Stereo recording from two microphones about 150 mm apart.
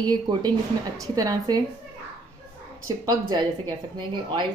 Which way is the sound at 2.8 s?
25° right (ahead or behind).